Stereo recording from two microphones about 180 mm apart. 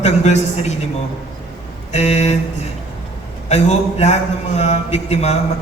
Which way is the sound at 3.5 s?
40° left (ahead or behind).